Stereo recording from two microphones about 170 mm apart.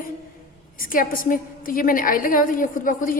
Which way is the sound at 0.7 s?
55° left (ahead or behind).